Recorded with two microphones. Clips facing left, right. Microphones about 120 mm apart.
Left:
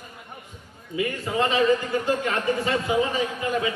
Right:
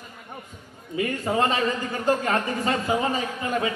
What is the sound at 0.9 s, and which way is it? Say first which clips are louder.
A man's voice: right 2 dB; 40° right (ahead or behind).